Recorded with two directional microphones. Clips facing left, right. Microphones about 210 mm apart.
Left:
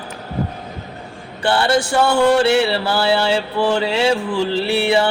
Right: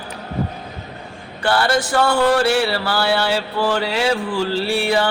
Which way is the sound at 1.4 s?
25° left (ahead or behind).